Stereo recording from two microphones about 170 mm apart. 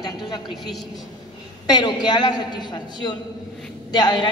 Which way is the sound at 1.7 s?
25° left (ahead or behind).